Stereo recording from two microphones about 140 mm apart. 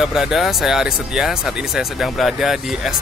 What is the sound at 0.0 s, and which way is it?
Speech, 5° right (ahead or behind).